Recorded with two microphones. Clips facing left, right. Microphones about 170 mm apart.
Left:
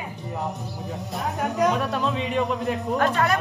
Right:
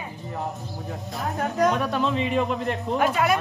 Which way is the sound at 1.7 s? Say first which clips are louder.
Right 1 dB; centre (ahead or behind).